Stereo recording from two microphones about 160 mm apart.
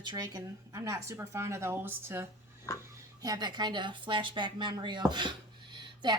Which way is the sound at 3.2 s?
25° right (ahead or behind).